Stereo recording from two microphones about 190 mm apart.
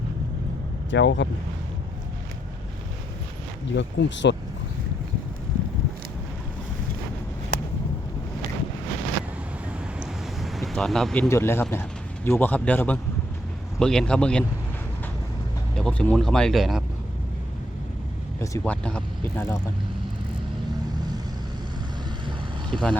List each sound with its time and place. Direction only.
0.9 s speech: 70° left (ahead or behind)
3.8 s speech: 70° left (ahead or behind)
9.6 s a sound: centre (ahead or behind)
11.7 s speech: 10° left (ahead or behind)
15.7 s speech: 5° left (ahead or behind)
18.3 s speech: 10° left (ahead or behind)
22.7 s speech: 5° left (ahead or behind)